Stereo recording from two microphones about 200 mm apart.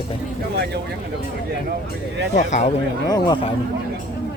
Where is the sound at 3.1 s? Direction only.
20° left (ahead or behind).